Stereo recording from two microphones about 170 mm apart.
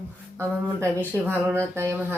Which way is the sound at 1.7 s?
15° right (ahead or behind).